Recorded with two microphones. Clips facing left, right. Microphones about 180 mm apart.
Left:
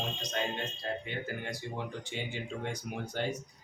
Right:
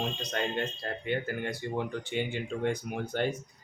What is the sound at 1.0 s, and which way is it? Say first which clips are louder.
Speech: right 6 dB; 55° right (ahead or behind).